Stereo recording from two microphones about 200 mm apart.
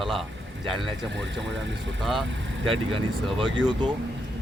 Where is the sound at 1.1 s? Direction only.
65° right (ahead or behind).